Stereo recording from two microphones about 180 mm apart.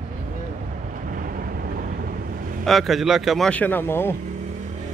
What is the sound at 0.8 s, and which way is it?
Vehicle, 50° right (ahead or behind).